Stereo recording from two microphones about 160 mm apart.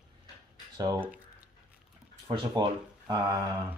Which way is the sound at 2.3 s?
25° right (ahead or behind).